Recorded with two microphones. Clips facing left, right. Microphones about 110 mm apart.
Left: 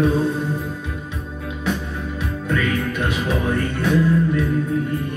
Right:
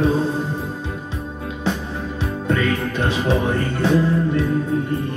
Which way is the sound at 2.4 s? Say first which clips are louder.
Right 1 dB; 30° right (ahead or behind).